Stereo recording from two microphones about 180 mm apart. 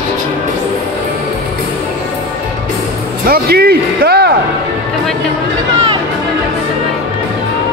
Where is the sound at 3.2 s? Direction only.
55° right (ahead or behind).